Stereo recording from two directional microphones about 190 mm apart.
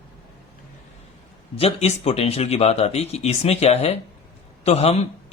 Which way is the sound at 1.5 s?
30° left (ahead or behind).